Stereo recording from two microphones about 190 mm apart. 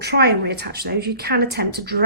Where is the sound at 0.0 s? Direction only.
60° right (ahead or behind).